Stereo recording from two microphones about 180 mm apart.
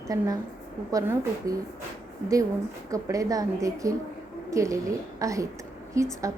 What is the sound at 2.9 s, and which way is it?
A woman's voice, 20° right (ahead or behind).